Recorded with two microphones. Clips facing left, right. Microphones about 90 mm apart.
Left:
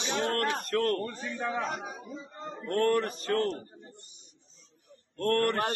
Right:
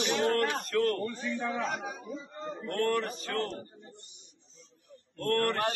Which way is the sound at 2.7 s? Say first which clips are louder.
Left 3 dB; 40° left (ahead or behind).